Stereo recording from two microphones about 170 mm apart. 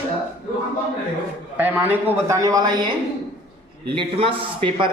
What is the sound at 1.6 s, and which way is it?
Speech, 10° right (ahead or behind).